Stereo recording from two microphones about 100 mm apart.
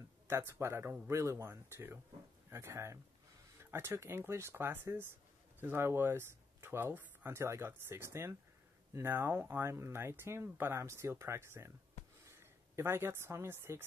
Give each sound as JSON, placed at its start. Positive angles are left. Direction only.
{"t": 0.3, "sound": "speech", "side_deg": -25}